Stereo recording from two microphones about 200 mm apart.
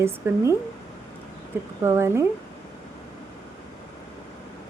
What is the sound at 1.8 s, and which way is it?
Speech, 15° right (ahead or behind).